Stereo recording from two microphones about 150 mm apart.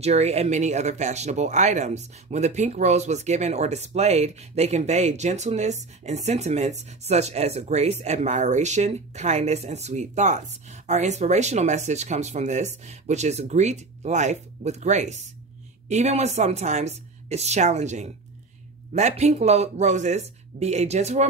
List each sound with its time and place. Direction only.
0.0 s speech: 45° right (ahead or behind)